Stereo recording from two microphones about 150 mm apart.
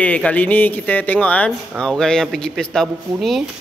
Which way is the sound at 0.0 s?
10° left (ahead or behind).